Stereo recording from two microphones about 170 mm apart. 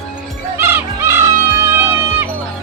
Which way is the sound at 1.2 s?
15° right (ahead or behind).